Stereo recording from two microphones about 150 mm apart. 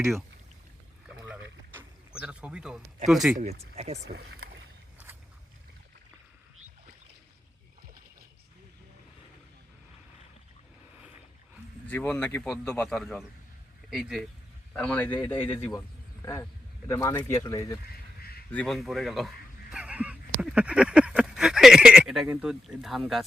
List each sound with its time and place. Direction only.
1.0 s a sound: 10° right (ahead or behind)
3.1 s speech: centre (ahead or behind)
3.8 s speech: 45° right (ahead or behind)
4.1 s speech: 90° right
11.9 s speech: 10° left (ahead or behind)
14.7 s speech: 10° left (ahead or behind)
15.2 s speech: 35° left (ahead or behind)
16.2 s speech: 25° left (ahead or behind)
18.2 s a sound: 90° left
18.5 s speech: 5° left (ahead or behind)
19.7 s a sound: 10° right (ahead or behind)